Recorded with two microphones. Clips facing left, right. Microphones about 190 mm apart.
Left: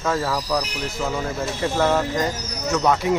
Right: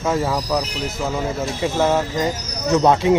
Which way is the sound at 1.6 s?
15° right (ahead or behind).